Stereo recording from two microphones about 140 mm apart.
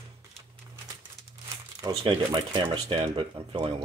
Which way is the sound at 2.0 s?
35° right (ahead or behind).